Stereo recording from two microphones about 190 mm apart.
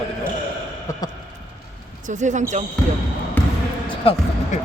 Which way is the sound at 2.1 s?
40° right (ahead or behind).